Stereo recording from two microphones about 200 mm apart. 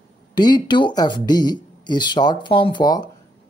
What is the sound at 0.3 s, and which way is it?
Speech, 20° left (ahead or behind).